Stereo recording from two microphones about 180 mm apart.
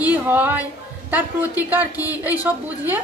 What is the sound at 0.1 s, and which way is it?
Speech, 10° right (ahead or behind).